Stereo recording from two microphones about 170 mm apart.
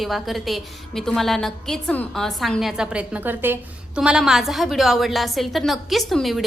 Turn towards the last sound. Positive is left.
turn(degrees=0)  # may be behind; listen again after turning